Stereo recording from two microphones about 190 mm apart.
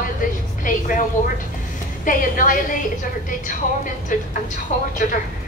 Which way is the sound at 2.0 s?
45° left (ahead or behind).